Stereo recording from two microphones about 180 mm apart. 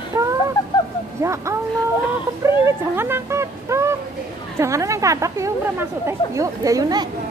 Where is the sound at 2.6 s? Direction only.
10° right (ahead or behind).